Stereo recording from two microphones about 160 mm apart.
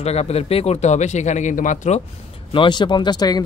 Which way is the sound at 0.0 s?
40° left (ahead or behind).